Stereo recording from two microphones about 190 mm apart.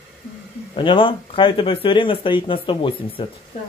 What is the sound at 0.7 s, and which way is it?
Speech, 25° left (ahead or behind).